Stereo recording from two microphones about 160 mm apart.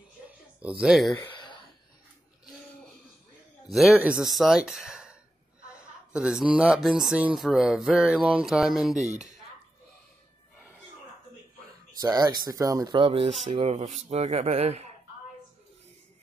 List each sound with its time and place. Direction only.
0.6 s speech: 10° right (ahead or behind)
3.7 s speech: centre (ahead or behind)
12.0 s speech: 25° right (ahead or behind); by 14.9 s 40° right (ahead or behind)